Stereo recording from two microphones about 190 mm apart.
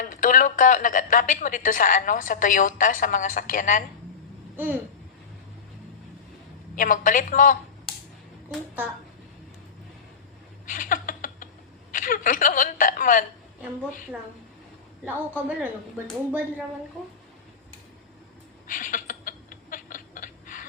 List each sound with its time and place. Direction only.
0.0 s speech: 45° left (ahead or behind)
4.5 s speech: 10° right (ahead or behind)
6.7 s speech: 45° left (ahead or behind)
10.7 s a sound: 45° left (ahead or behind)
11.9 s a woman's voice: 45° left (ahead or behind)
15.0 s a woman's voice: 10° right (ahead or behind)
18.7 s a sound: 45° left (ahead or behind)